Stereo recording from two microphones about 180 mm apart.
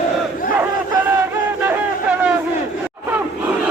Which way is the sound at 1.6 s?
5° right (ahead or behind).